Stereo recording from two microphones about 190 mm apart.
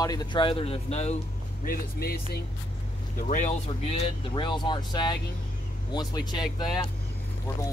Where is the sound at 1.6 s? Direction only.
50° left (ahead or behind).